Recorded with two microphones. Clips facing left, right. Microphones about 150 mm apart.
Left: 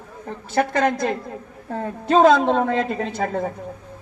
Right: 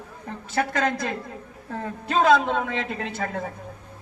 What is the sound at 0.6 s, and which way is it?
Speech, 15° left (ahead or behind).